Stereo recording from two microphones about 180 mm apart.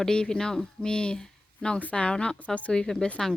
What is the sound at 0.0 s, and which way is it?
A woman's voice, 5° left (ahead or behind).